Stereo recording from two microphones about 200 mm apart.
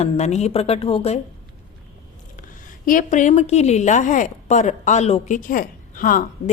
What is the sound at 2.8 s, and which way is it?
A woman's voice, 40° left (ahead or behind).